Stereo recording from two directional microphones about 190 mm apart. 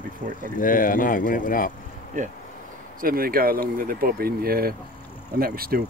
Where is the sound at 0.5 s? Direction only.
45° left (ahead or behind).